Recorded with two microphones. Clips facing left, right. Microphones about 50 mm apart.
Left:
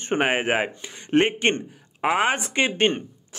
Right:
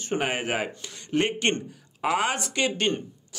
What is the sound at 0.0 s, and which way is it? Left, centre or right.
Speech, left.